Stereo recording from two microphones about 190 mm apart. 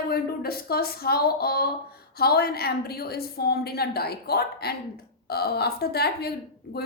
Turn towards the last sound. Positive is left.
turn(degrees=55)  # may be behind; listen again after turning